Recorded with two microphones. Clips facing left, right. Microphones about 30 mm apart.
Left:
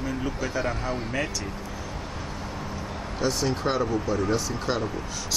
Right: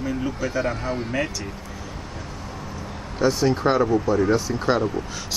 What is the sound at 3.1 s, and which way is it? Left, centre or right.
Speech, centre.